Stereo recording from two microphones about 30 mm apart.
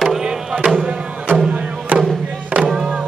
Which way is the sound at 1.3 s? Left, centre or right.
Right.